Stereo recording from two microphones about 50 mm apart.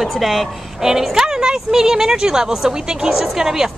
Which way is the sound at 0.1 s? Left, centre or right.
Centre.